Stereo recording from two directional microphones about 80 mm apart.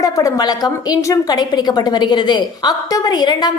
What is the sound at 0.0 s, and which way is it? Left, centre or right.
A woman's voice, left.